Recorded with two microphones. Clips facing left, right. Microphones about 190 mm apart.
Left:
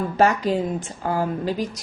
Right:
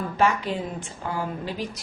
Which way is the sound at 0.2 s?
40° left (ahead or behind).